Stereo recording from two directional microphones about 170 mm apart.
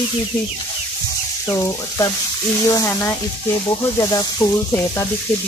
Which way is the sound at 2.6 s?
20° left (ahead or behind).